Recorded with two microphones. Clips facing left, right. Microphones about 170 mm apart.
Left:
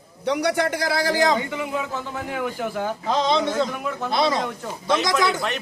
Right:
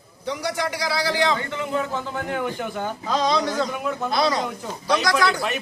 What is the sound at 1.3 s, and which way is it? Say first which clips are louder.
A man's voice: even; 10° left (ahead or behind).